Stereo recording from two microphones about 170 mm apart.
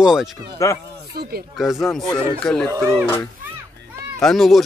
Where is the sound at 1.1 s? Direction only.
70° right (ahead or behind).